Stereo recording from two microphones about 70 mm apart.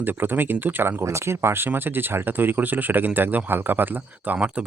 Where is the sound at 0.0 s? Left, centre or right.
Right.